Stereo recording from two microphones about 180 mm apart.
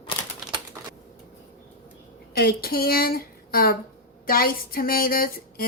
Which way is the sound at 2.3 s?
55° left (ahead or behind).